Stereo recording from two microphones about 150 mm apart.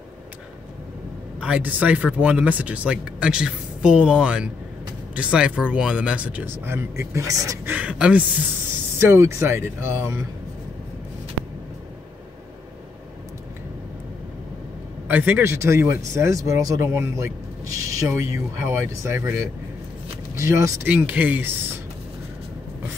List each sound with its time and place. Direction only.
1.4 s speech: 10° right (ahead or behind)
7.7 s speech: 10° right (ahead or behind)
15.0 s speech: 10° right (ahead or behind)